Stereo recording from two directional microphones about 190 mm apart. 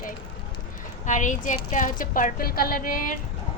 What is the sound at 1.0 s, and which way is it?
A woman's voice, 40° left (ahead or behind).